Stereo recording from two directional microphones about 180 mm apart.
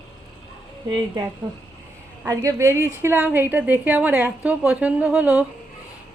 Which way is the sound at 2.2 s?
15° right (ahead or behind).